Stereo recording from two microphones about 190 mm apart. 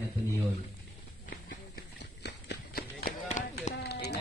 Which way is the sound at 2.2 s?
60° left (ahead or behind).